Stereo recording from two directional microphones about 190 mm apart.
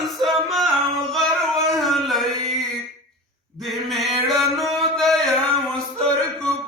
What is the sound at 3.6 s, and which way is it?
Mantra, centre (ahead or behind).